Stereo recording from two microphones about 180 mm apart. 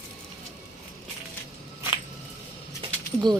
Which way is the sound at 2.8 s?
30° right (ahead or behind).